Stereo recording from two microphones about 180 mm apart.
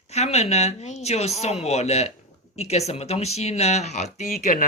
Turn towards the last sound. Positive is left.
turn(degrees=45)  # may be behind; listen again after turning